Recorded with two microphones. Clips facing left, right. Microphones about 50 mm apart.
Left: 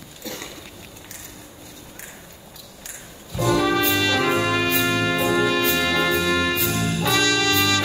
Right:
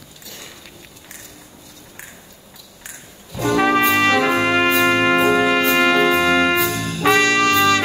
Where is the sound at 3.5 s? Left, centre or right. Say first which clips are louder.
Right 5 dB; right.